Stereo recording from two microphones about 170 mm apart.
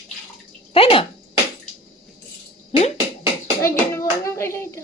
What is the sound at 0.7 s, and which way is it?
Speech, 35° left (ahead or behind).